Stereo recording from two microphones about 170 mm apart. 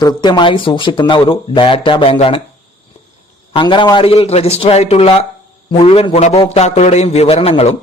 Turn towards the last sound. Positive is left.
turn(degrees=35)  # may be behind; listen again after turning